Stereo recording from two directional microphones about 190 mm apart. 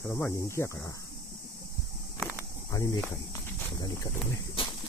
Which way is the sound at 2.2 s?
20° left (ahead or behind).